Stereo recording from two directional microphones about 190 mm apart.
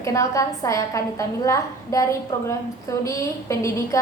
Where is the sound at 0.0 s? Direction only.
15° left (ahead or behind).